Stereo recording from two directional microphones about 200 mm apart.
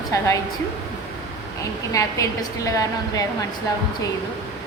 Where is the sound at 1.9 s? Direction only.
15° left (ahead or behind).